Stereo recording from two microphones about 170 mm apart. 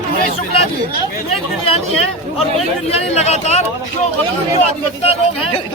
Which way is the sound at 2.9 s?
40° left (ahead or behind).